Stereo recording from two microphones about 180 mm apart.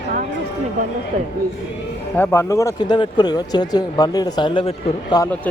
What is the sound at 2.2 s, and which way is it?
Speech, 15° left (ahead or behind).